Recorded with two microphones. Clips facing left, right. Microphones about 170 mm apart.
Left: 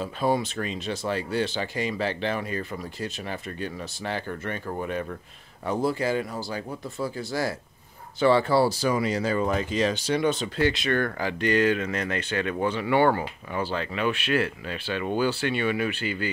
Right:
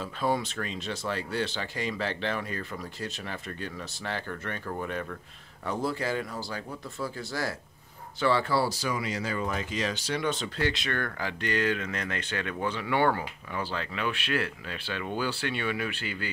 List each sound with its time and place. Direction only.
0.0 s speech: 15° left (ahead or behind)
8.8 s speech: 35° left (ahead or behind)
10.1 s speech: 15° left (ahead or behind)